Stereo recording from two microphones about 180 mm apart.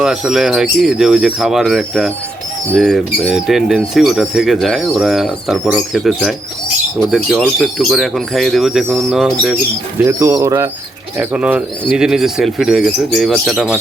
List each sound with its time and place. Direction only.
0.0 s speech: 5° right (ahead or behind)
10.0 s speech: 15° right (ahead or behind)